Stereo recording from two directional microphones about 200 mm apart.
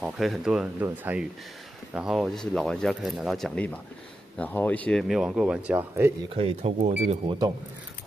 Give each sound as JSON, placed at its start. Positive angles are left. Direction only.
{"t": 0.0, "sound": "speech", "side_deg": 0}
{"t": 6.3, "sound": "speech", "side_deg": -30}